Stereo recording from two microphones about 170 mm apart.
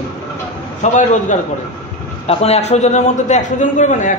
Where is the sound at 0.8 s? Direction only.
45° left (ahead or behind).